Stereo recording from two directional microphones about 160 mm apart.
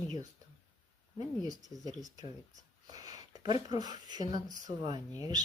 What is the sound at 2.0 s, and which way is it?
Speech, 25° right (ahead or behind).